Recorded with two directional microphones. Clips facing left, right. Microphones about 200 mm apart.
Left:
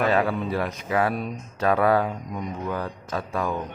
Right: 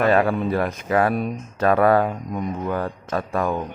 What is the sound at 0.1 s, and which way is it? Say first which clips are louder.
Speech: right 4 dB; 50° right (ahead or behind).